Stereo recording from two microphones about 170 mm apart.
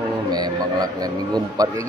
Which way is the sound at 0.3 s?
25° right (ahead or behind).